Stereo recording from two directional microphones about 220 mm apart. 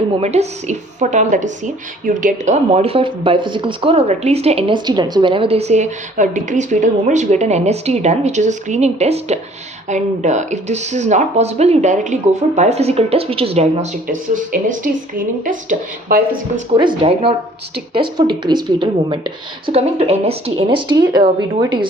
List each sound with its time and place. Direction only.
0.2 s a woman's voice: 30° right (ahead or behind)
14.1 s a woman's voice: 35° right (ahead or behind)
16.7 s a woman's voice: 20° right (ahead or behind)